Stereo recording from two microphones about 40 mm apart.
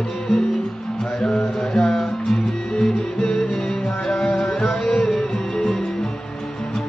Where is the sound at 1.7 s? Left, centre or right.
Centre.